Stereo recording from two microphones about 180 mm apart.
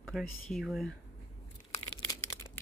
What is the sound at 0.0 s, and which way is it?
Speech, centre (ahead or behind).